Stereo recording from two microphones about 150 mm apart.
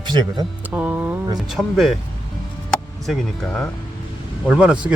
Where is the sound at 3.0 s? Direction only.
Centre (ahead or behind).